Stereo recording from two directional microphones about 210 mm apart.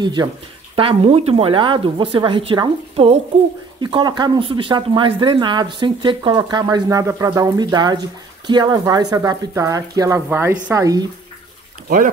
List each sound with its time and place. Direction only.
0.0 s speech: 20° right (ahead or behind)